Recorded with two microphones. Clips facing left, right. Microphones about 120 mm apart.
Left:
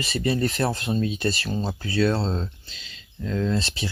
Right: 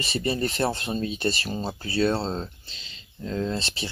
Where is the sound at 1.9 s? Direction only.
30° right (ahead or behind).